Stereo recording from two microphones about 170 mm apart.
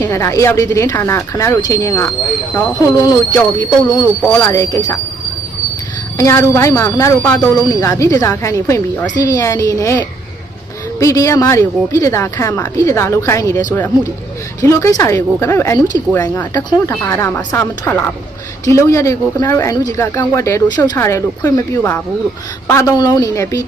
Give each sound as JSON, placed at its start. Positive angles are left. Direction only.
{"t": 0.0, "sound": "speech", "side_deg": 15}
{"t": 6.1, "sound": "speech", "side_deg": 15}
{"t": 14.6, "sound": "speech", "side_deg": 20}